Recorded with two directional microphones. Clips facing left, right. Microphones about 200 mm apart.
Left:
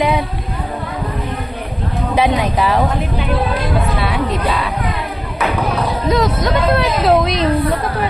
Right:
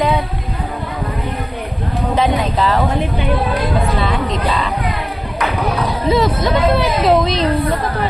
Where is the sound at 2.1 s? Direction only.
10° left (ahead or behind).